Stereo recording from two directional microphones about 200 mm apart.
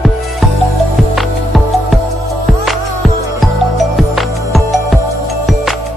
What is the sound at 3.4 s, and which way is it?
Music, centre (ahead or behind).